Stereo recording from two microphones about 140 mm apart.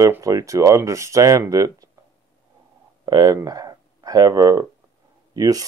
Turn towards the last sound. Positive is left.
turn(degrees=-25)  # may be behind; listen again after turning